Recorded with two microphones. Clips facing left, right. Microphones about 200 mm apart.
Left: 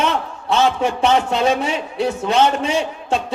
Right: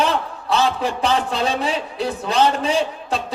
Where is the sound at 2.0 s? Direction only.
30° left (ahead or behind).